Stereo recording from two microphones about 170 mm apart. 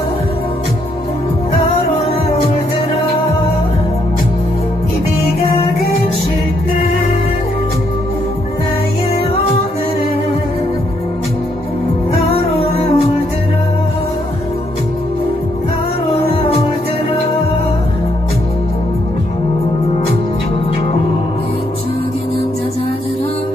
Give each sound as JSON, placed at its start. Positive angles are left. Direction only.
{"t": 12.1, "sound": "music", "side_deg": 35}